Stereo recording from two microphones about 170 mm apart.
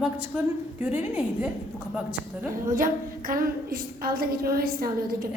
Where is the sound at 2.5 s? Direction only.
50° right (ahead or behind).